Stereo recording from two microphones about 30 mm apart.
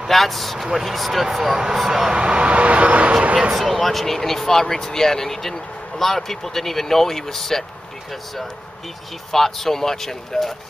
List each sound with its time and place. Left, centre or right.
0.1 s speech: centre
2.0 s speech: right
3.5 s speech: centre
9.3 s speech: centre